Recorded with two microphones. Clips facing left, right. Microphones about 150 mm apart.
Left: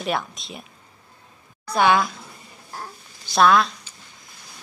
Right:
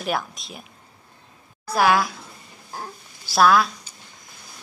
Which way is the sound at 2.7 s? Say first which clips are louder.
Right 1 dB; 10° right (ahead or behind).